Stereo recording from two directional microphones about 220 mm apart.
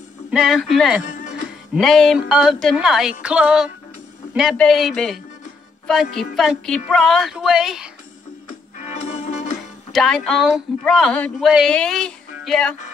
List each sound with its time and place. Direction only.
0.3 s speech: centre (ahead or behind)
1.0 s music: 35° left (ahead or behind)
1.7 s speech: centre (ahead or behind)
8.5 s music: 35° left (ahead or behind)
9.9 s speech: centre (ahead or behind)